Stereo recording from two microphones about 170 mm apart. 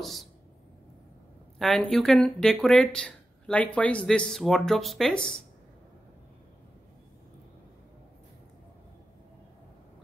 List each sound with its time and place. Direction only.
0.0 s speech: centre (ahead or behind)
1.6 s speech: centre (ahead or behind)